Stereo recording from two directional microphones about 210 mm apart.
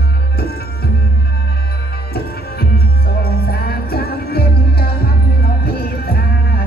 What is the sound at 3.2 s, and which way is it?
Music, 45° left (ahead or behind).